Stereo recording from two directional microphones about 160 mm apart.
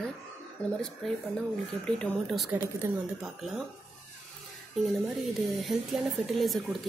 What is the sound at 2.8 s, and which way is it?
Speech, 15° right (ahead or behind).